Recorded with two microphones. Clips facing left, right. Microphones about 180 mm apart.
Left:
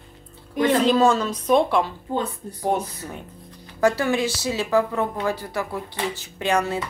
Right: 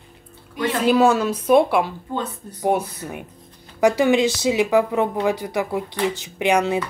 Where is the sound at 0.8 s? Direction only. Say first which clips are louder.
Right 5 dB; 10° right (ahead or behind).